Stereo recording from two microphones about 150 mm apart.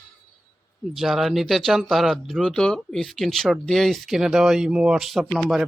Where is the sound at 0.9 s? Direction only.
Centre (ahead or behind).